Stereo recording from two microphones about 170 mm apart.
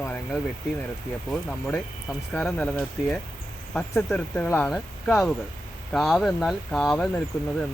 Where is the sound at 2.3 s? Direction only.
5° left (ahead or behind).